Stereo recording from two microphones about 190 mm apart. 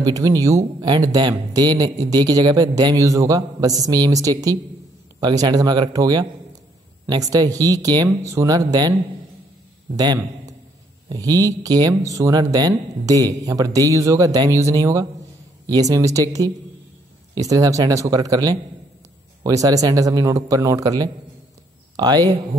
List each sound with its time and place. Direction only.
0.0 s speech: 20° right (ahead or behind)
11.1 s speech: 20° right (ahead or behind)